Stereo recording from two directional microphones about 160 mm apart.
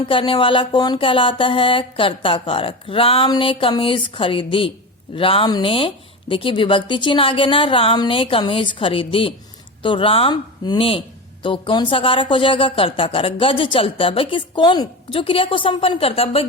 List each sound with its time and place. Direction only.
0.0 s speech: 30° left (ahead or behind)